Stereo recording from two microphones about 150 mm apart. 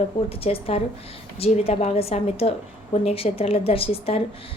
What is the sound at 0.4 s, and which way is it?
A woman's voice, 40° left (ahead or behind).